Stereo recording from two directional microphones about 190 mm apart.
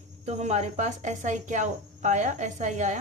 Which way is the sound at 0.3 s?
35° right (ahead or behind).